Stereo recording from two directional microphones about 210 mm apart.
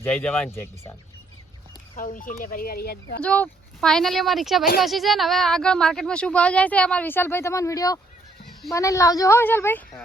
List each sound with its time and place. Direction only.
0.0 s a woman's voice: 5° left (ahead or behind)
2.0 s speech: 40° left (ahead or behind)
3.2 s a woman's voice: 5° left (ahead or behind)